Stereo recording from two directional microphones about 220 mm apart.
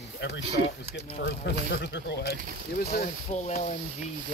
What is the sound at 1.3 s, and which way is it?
Speech, 50° left (ahead or behind).